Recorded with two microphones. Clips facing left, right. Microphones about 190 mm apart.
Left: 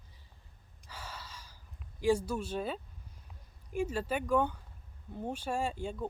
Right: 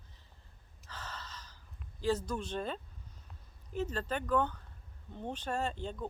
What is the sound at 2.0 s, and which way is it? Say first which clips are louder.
Speech: left 4 dB; 10° left (ahead or behind).